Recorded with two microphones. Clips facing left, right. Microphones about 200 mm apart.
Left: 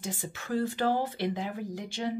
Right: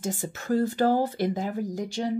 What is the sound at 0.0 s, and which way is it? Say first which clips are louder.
Speech: right 6 dB; 45° right (ahead or behind).